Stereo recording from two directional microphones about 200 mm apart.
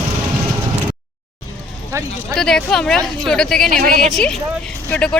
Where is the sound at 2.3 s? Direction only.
5° left (ahead or behind).